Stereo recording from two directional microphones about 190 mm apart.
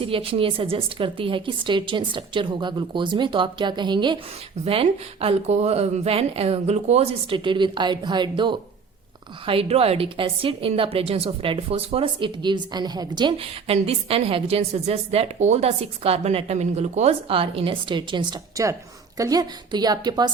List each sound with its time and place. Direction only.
0.0 s a woman's voice: 30° right (ahead or behind)